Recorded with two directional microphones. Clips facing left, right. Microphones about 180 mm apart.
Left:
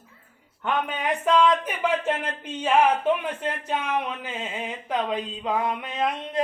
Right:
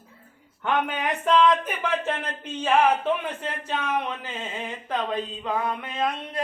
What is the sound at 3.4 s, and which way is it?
A man's voice, 15° left (ahead or behind).